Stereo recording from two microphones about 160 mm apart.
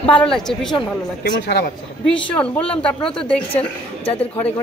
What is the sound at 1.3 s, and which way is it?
Speech, 80° left.